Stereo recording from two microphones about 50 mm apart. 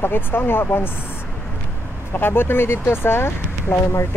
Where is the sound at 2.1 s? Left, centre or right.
Left.